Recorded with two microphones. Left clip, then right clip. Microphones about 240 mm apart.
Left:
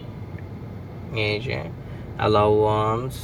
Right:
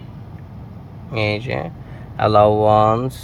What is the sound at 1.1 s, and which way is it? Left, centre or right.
Speech, centre.